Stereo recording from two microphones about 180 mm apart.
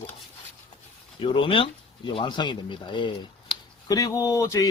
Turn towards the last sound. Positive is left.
turn(degrees=20)  # may be behind; listen again after turning